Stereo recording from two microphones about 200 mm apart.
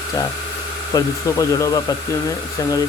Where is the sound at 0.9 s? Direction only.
15° left (ahead or behind).